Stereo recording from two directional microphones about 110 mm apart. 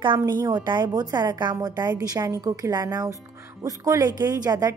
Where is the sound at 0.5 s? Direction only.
40° right (ahead or behind).